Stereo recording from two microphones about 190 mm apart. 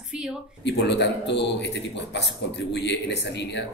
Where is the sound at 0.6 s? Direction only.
65° left (ahead or behind).